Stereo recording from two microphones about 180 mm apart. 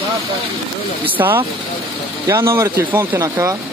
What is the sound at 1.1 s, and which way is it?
Speech, 10° right (ahead or behind).